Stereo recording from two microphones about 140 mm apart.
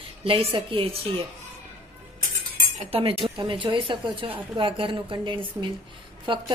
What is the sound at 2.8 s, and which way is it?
Speech, 40° right (ahead or behind).